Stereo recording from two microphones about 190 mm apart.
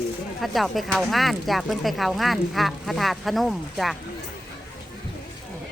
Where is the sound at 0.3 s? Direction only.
Centre (ahead or behind).